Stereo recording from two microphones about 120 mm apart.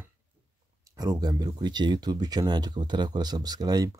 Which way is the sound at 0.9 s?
30° right (ahead or behind).